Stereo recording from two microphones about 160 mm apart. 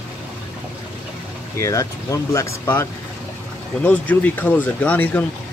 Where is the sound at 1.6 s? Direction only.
20° left (ahead or behind).